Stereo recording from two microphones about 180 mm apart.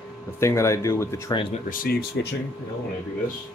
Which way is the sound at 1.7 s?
55° left (ahead or behind).